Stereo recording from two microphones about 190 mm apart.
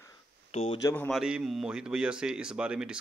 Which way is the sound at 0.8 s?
15° left (ahead or behind).